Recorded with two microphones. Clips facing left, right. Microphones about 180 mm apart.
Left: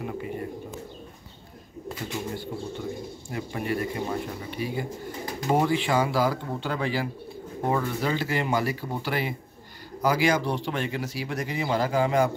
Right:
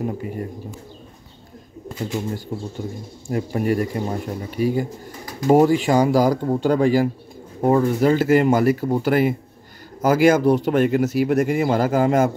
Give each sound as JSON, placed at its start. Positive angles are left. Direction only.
{"t": 0.0, "sound": "speech", "side_deg": -40}
{"t": 1.9, "sound": "pigeon", "side_deg": 0}
{"t": 3.3, "sound": "speech", "side_deg": -45}